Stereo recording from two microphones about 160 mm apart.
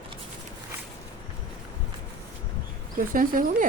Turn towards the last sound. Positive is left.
turn(degrees=-55)  # may be behind; listen again after turning